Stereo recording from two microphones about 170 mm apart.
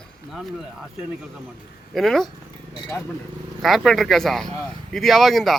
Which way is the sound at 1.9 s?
Centre (ahead or behind).